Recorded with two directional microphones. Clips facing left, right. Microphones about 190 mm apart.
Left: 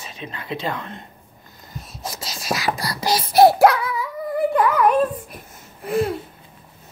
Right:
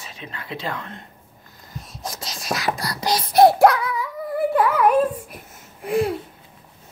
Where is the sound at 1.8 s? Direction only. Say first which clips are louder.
Left 1 dB; 5° left (ahead or behind).